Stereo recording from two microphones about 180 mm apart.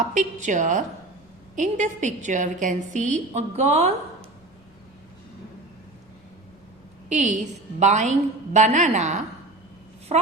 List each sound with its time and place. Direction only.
0.1 s a woman's voice: 40° right (ahead or behind)
7.1 s a woman's voice: 45° right (ahead or behind)